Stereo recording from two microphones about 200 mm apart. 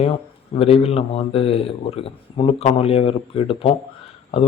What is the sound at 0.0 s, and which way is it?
Speech, 30° left (ahead or behind).